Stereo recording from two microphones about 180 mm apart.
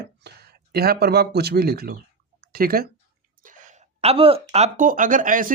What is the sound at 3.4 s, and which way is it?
A woman's voice, 40° right (ahead or behind).